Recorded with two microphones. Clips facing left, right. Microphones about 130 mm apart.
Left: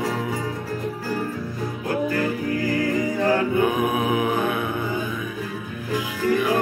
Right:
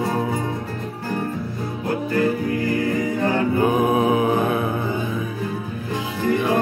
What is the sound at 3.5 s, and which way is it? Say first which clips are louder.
Music: right 3 dB; 35° right (ahead or behind).